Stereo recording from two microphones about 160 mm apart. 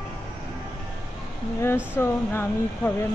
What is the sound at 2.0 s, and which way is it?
Speech, 15° left (ahead or behind).